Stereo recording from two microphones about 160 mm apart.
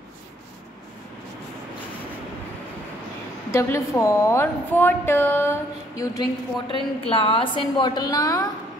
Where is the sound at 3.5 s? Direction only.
20° left (ahead or behind).